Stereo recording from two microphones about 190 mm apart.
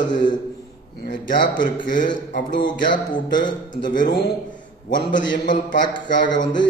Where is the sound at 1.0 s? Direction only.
45° left (ahead or behind).